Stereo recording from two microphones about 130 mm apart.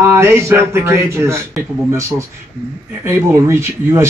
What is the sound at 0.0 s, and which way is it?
Speech, 20° right (ahead or behind).